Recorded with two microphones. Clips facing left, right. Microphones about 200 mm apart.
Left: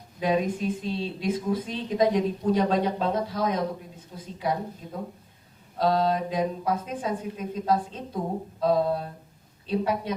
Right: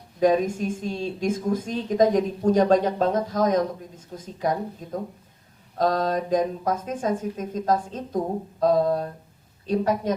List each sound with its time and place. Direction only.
0.2 s a woman's voice: 45° right (ahead or behind)